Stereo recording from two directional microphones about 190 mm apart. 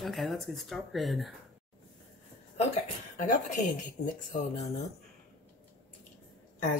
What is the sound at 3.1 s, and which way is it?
Speech, 40° left (ahead or behind).